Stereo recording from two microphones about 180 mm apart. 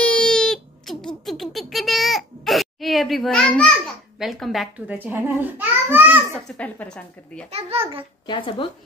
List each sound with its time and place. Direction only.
0.0 s a sound: 5° left (ahead or behind)
4.2 s a child's voice: centre (ahead or behind)
6.5 s speech: 5° left (ahead or behind)
7.5 s a child's voice: 30° right (ahead or behind)
8.3 s speech: 30° left (ahead or behind)